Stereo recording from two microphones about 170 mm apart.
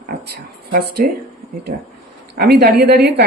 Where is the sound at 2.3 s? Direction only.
70° right (ahead or behind).